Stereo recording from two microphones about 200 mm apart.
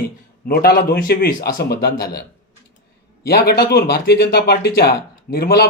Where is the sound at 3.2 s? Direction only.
50° left (ahead or behind).